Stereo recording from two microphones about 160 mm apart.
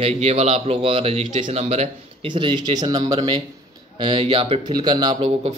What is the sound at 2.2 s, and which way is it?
A man's voice, 30° right (ahead or behind).